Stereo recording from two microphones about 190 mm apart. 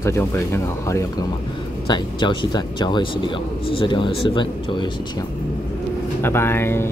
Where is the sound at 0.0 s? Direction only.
15° left (ahead or behind).